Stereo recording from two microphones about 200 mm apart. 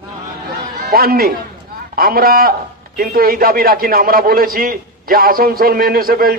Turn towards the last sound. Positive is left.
turn(degrees=-50)  # may be behind; listen again after turning